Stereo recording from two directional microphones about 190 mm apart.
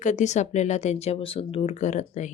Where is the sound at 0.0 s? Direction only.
40° left (ahead or behind).